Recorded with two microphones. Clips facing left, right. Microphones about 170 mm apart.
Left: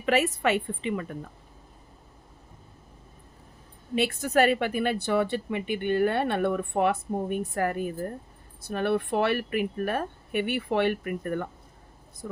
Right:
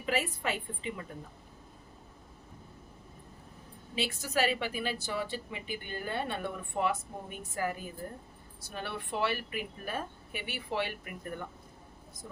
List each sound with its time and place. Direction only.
0.0 s a woman's voice: 75° left (ahead or behind)
3.9 s a woman's voice: 60° left (ahead or behind)